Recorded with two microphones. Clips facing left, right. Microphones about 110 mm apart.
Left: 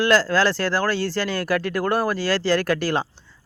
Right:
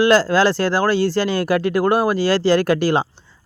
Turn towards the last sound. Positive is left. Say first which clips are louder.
# right 5 dB
turn(degrees=-15)  # may be behind; listen again after turning